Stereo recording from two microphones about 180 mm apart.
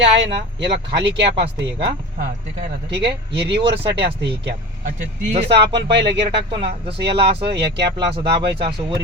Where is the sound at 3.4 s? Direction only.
30° right (ahead or behind).